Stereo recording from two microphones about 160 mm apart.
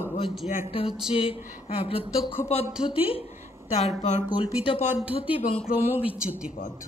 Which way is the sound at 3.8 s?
45° left (ahead or behind).